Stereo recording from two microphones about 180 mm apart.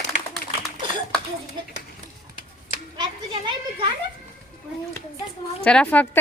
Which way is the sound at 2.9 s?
25° right (ahead or behind).